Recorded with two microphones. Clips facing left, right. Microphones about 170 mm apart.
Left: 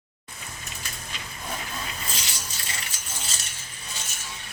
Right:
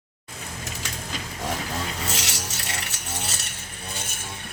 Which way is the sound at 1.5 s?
80° right.